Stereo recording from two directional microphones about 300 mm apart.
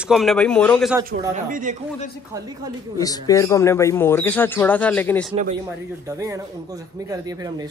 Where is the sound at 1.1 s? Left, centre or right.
Right.